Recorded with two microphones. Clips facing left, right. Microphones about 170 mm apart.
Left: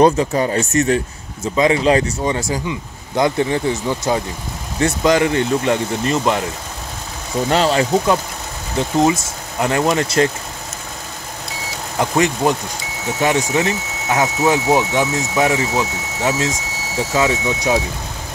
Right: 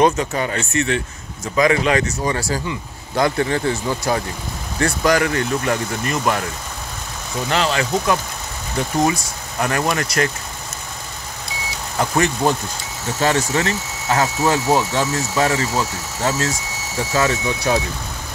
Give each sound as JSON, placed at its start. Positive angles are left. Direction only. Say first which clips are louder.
{"t": 0.0, "sound": "speech", "louder": "left 4 dB", "side_deg": 35}
{"t": 1.6, "sound": "speech", "louder": "left 2 dB", "side_deg": 30}
{"t": 2.2, "sound": "speech", "louder": "left 2 dB", "side_deg": 20}
{"t": 7.4, "sound": "speech", "louder": "left 4 dB", "side_deg": 35}
{"t": 12.0, "sound": "speech", "louder": "left 2 dB", "side_deg": 15}